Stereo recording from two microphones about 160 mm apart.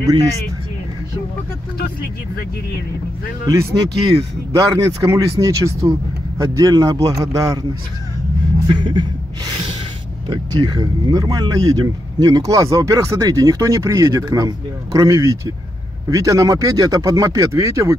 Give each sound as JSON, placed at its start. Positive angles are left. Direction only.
{"t": 3.4, "sound": "speech", "side_deg": -20}
{"t": 8.7, "sound": "speech", "side_deg": -30}
{"t": 10.2, "sound": "speech", "side_deg": -25}